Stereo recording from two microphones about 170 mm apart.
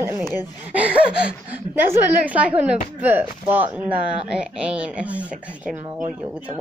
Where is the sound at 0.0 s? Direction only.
15° right (ahead or behind).